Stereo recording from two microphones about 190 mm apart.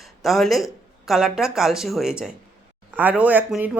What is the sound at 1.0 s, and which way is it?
Speech, 5° right (ahead or behind).